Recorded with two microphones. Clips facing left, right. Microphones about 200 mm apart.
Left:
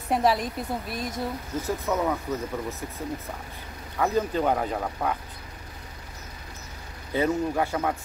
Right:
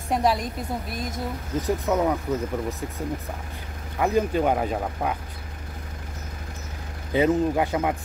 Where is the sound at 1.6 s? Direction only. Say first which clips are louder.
Right 4 dB; 15° right (ahead or behind).